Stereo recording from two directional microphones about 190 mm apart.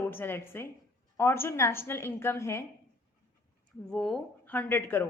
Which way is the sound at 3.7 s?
Centre (ahead or behind).